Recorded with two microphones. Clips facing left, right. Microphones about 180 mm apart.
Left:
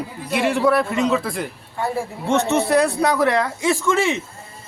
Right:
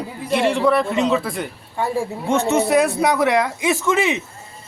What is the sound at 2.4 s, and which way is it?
A man's voice, 15° right (ahead or behind).